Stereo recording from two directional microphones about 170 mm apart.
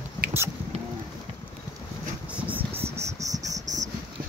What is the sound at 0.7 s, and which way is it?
Boat, 35° right (ahead or behind).